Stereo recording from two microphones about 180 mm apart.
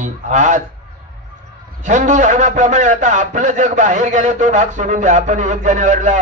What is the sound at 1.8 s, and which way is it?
A man's voice, 40° right (ahead or behind).